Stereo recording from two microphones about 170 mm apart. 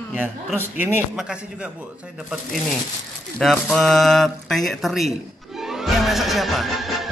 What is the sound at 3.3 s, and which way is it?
Speech, centre (ahead or behind).